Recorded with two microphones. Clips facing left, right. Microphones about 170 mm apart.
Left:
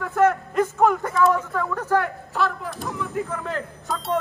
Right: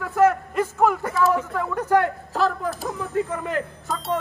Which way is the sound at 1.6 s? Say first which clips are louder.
Right 5 dB; 15° right (ahead or behind).